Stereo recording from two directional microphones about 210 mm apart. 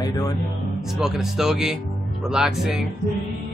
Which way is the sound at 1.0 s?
Centre (ahead or behind).